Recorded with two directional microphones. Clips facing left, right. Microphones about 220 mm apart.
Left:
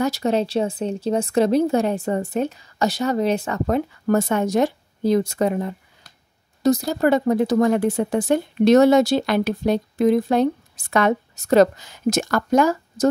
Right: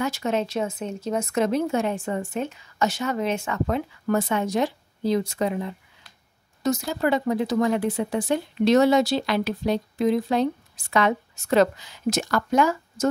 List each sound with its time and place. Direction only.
0.0 s speech: 35° left (ahead or behind)